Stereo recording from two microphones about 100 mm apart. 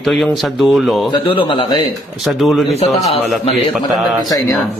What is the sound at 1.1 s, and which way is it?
Speech, 55° left (ahead or behind).